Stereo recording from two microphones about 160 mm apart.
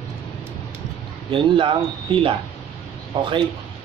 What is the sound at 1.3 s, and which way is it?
Speech, 30° right (ahead or behind).